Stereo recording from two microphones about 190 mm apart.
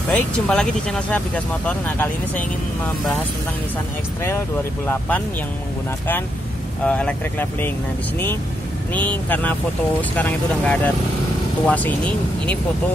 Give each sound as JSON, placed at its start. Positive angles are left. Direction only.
{"t": 0.1, "sound": "speech", "side_deg": 5}
{"t": 4.8, "sound": "speech", "side_deg": 10}
{"t": 6.9, "sound": "speech", "side_deg": 5}
{"t": 8.9, "sound": "speech", "side_deg": 10}